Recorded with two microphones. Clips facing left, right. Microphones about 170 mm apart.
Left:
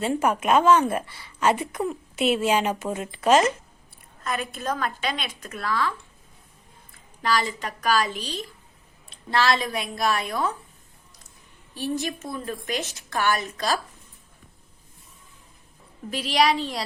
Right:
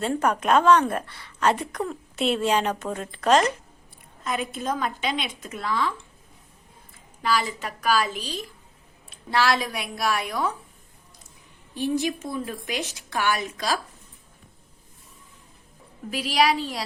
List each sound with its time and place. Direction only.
0.0 s a woman's voice: 5° left (ahead or behind)
4.2 s a woman's voice: 20° right (ahead or behind)
7.2 s a woman's voice: 5° right (ahead or behind)
11.7 s speech: 15° right (ahead or behind)
16.0 s speech: 10° right (ahead or behind)